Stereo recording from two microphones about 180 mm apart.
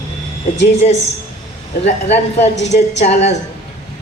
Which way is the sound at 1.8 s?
35° left (ahead or behind).